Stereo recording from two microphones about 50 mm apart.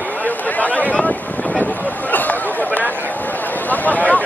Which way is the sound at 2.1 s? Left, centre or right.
Left.